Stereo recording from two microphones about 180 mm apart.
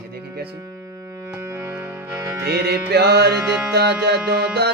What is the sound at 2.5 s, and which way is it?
Speech, 65° right (ahead or behind).